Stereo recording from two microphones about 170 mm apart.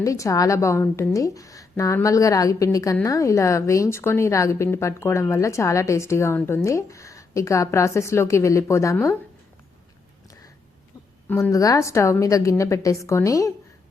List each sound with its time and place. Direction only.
0.0 s a woman's voice: 20° left (ahead or behind)
11.3 s a woman's voice: 10° left (ahead or behind)